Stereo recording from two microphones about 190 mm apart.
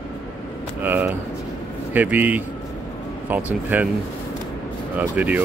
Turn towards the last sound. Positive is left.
turn(degrees=-10)  # may be behind; listen again after turning